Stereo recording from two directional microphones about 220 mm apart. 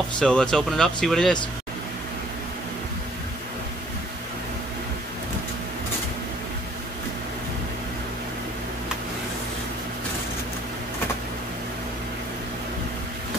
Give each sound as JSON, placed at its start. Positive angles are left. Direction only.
{"t": 0.2, "sound": "speech", "side_deg": 5}